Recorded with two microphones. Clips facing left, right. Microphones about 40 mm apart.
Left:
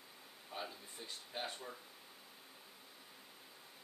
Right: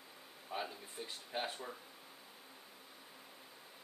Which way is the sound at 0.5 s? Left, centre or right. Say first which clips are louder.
Right 4 dB; centre.